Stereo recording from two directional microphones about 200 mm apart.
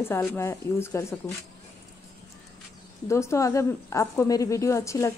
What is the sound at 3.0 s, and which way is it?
Speech, 15° left (ahead or behind).